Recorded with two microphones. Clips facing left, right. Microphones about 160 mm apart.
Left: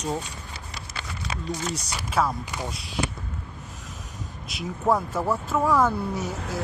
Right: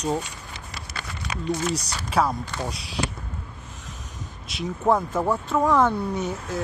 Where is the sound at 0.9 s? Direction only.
25° left (ahead or behind).